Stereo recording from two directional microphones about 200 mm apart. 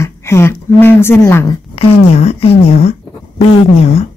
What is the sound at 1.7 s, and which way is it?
A woman's voice, 30° left (ahead or behind).